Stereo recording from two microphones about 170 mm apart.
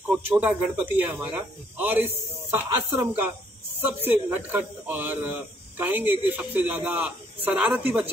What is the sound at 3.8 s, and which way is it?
A man's voice, 10° right (ahead or behind).